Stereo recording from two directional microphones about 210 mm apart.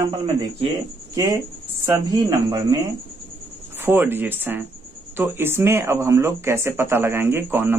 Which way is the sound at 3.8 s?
10° right (ahead or behind).